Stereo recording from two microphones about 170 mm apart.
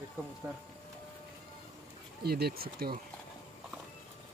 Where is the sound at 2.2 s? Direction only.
65° right (ahead or behind).